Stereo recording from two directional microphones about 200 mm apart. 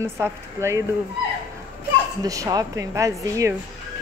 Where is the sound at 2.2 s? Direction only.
15° right (ahead or behind).